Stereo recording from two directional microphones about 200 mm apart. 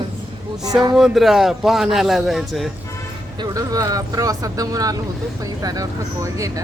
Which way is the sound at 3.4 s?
15° right (ahead or behind).